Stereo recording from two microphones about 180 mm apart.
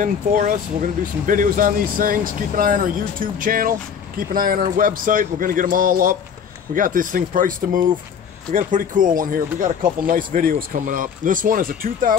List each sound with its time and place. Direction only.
0.0 s speech: 45° right (ahead or behind)